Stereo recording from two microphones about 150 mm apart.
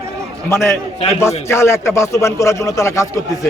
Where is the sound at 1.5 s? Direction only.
20° left (ahead or behind).